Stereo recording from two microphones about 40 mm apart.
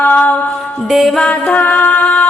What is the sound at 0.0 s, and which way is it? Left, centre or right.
Music, left.